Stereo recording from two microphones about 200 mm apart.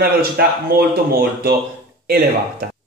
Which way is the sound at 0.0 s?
50° right (ahead or behind).